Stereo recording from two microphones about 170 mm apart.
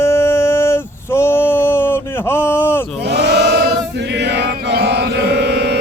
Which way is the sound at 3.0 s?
80° right.